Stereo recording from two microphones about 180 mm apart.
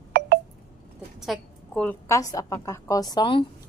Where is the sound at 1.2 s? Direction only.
Centre (ahead or behind).